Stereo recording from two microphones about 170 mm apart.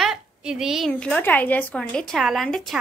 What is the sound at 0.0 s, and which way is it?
A woman's voice, 5° right (ahead or behind).